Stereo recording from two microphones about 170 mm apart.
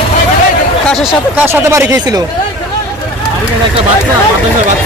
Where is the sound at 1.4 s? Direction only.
15° right (ahead or behind).